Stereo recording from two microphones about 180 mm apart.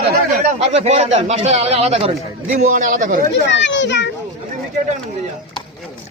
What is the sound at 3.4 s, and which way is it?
Speech, 85° left.